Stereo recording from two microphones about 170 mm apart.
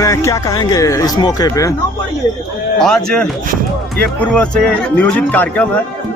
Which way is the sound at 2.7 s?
5° left (ahead or behind).